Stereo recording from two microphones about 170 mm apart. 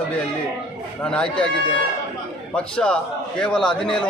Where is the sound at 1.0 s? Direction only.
5° left (ahead or behind).